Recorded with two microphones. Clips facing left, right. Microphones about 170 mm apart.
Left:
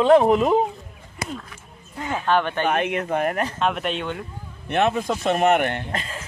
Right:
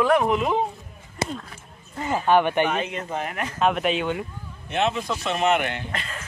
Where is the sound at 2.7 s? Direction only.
60° left (ahead or behind).